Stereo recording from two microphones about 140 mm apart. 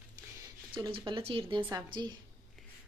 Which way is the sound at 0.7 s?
35° right (ahead or behind).